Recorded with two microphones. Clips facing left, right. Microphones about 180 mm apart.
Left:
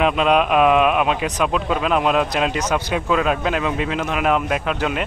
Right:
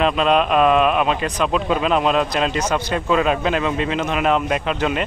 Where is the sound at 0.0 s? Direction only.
10° left (ahead or behind).